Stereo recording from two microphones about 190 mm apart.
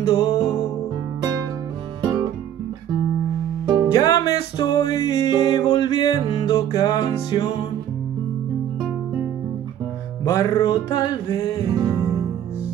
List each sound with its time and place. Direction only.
0.1 s music: 20° left (ahead or behind)
2.0 s music: 25° right (ahead or behind)
3.6 s music: 20° right (ahead or behind)
3.9 s music: 20° left (ahead or behind)
10.2 s music: 15° left (ahead or behind)
11.7 s music: 20° right (ahead or behind)